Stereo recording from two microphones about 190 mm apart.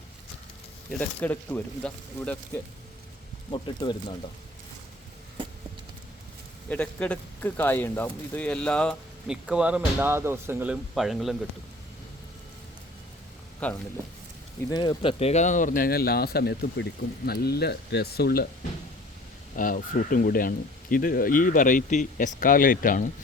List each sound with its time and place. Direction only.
0.9 s speech: 5° left (ahead or behind)
3.5 s speech: 25° left (ahead or behind)
6.7 s speech: 5° left (ahead or behind)
13.6 s speech: 10° left (ahead or behind)
14.7 s speech: 25° left (ahead or behind); by 18.4 s 55° left (ahead or behind)
19.5 s speech: 45° left (ahead or behind)